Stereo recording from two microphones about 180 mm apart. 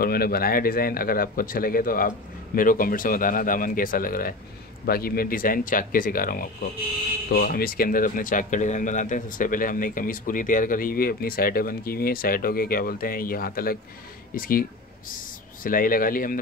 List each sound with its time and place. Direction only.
0.0 s speech: 55° left (ahead or behind)